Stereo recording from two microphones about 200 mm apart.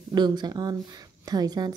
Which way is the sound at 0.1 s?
20° right (ahead or behind).